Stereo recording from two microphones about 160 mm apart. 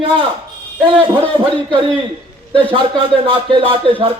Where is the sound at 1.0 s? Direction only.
35° right (ahead or behind).